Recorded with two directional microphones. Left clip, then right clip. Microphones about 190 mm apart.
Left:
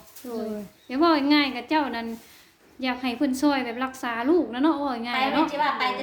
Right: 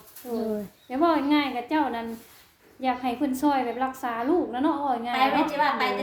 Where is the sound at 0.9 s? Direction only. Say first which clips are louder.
Left 2 dB; 45° left (ahead or behind).